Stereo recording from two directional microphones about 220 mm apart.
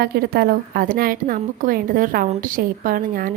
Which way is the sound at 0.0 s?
45° right (ahead or behind).